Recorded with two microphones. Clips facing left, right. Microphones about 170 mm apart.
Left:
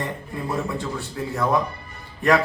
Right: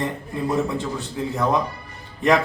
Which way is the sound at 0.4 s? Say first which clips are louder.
Right 4 dB; 20° right (ahead or behind).